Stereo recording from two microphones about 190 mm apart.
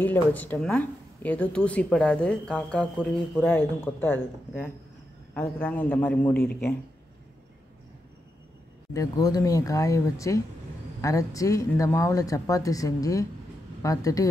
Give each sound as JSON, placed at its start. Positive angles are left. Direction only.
{"t": 0.0, "sound": "a woman's voice", "side_deg": 10}
{"t": 8.9, "sound": "a woman's voice", "side_deg": 20}